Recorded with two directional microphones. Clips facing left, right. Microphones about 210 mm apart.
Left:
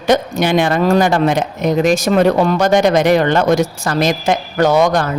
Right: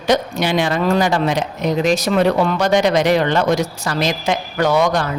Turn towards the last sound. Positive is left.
turn(degrees=45)  # may be behind; listen again after turning